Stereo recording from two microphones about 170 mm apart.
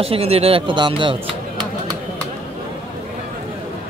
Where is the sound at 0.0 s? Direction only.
35° right (ahead or behind).